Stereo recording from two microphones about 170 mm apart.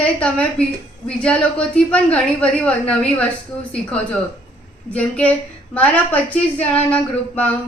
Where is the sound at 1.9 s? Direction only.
5° left (ahead or behind).